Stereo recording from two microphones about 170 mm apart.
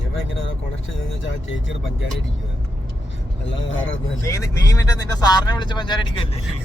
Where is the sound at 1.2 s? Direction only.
90° left.